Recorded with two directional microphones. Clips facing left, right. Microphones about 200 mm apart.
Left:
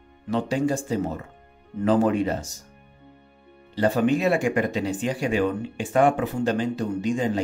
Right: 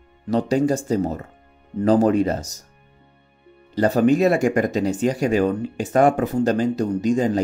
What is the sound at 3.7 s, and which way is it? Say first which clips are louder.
Speech: right 4 dB; 40° right (ahead or behind).